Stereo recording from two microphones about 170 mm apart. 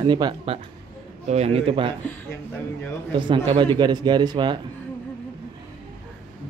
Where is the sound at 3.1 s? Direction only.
30° right (ahead or behind).